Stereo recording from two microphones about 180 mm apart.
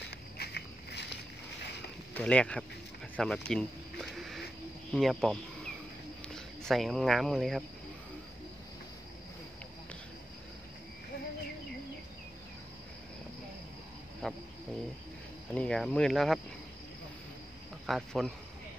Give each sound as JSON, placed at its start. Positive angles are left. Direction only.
{"t": 0.4, "sound": "walk", "side_deg": 65}
{"t": 2.1, "sound": "speech", "side_deg": 5}
{"t": 3.2, "sound": "a sound", "side_deg": 5}
{"t": 4.9, "sound": "speech", "side_deg": 0}
{"t": 14.2, "sound": "a sound", "side_deg": 5}
{"t": 15.5, "sound": "speech", "side_deg": 5}
{"t": 17.8, "sound": "speech", "side_deg": 0}